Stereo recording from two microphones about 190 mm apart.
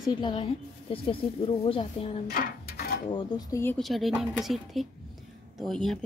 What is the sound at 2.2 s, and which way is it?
Mechanisms, 55° left (ahead or behind).